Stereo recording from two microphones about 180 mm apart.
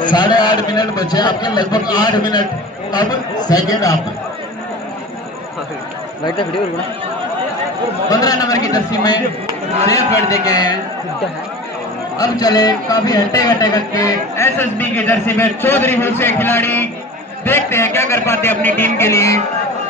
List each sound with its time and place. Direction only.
0.1 s a man's voice: 25° left (ahead or behind)
8.1 s a man's voice: 20° left (ahead or behind)
12.2 s a man's voice: 20° left (ahead or behind)